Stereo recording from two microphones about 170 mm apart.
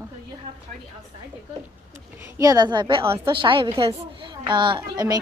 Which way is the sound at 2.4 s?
20° right (ahead or behind).